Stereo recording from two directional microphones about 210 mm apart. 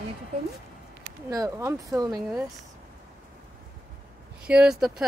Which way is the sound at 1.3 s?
15° right (ahead or behind).